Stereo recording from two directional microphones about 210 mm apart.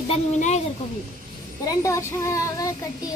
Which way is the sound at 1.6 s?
15° left (ahead or behind).